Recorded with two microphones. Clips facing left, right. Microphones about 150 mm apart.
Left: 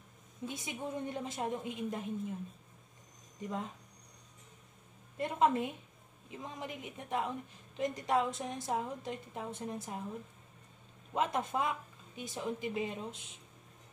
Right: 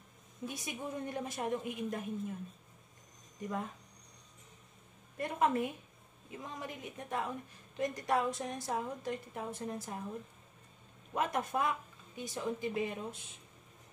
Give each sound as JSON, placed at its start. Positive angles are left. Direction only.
{"t": 0.5, "sound": "a woman's voice", "side_deg": 20}
{"t": 3.3, "sound": "a woman's voice", "side_deg": 20}
{"t": 5.1, "sound": "a woman's voice", "side_deg": 20}
{"t": 11.1, "sound": "a woman's voice", "side_deg": 20}